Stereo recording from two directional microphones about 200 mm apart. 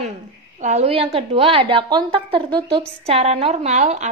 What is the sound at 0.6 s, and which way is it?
A woman's voice, 35° right (ahead or behind).